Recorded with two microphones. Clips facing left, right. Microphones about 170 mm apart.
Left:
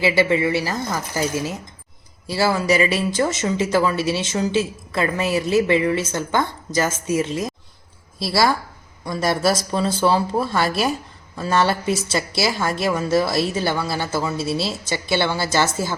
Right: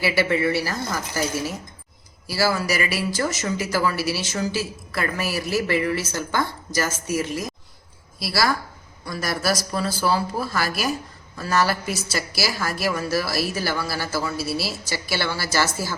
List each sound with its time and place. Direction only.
0.0 s a woman's voice: 20° left (ahead or behind)